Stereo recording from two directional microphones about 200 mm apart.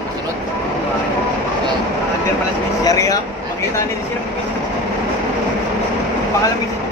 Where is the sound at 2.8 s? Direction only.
15° left (ahead or behind).